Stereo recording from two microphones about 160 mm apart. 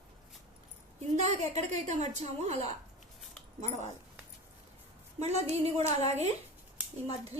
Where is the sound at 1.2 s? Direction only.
45° right (ahead or behind).